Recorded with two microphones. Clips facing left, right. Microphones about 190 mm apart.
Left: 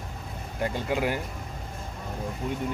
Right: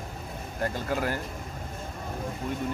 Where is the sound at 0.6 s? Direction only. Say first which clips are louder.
Left 2 dB; 15° left (ahead or behind).